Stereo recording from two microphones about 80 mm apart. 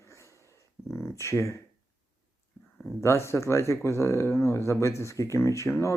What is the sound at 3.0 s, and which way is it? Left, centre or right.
Speech, left.